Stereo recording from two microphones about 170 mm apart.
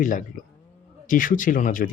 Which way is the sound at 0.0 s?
50° left (ahead or behind).